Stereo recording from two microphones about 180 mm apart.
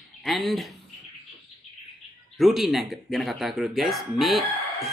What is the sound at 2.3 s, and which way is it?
A man's voice, centre (ahead or behind).